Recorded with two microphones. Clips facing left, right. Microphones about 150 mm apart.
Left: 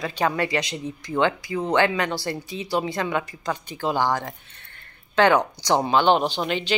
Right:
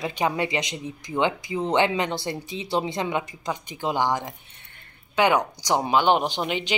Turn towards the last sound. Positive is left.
turn(degrees=-15)  # may be behind; listen again after turning